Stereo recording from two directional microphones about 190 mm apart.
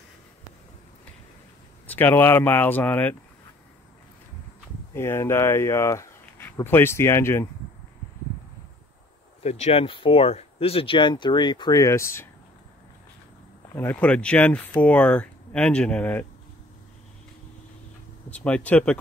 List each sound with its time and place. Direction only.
1.9 s speech: 10° left (ahead or behind)
4.9 s speech: 15° left (ahead or behind)
9.4 s speech: 35° left (ahead or behind); by 12.3 s 15° left (ahead or behind)
13.7 s speech: 10° left (ahead or behind)
18.3 s speech: 5° left (ahead or behind)